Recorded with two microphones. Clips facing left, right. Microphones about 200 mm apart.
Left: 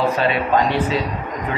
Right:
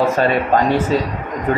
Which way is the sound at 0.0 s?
45° right (ahead or behind).